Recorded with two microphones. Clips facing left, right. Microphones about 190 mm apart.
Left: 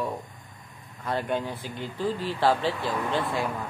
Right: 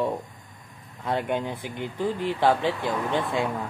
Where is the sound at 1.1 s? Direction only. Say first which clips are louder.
Right 2 dB; 20° right (ahead or behind).